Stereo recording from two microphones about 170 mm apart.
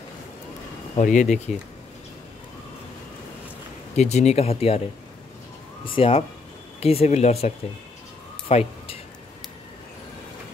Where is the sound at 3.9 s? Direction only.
40° left (ahead or behind).